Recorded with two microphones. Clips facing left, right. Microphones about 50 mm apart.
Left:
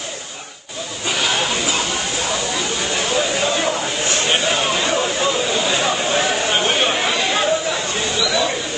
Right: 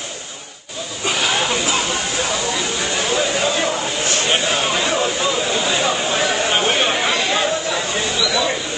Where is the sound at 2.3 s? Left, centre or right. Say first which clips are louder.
Even; centre.